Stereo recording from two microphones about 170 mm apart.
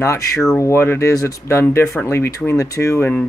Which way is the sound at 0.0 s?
15° left (ahead or behind).